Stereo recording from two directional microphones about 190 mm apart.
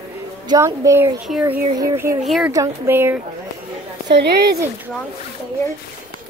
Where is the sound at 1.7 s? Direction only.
15° right (ahead or behind).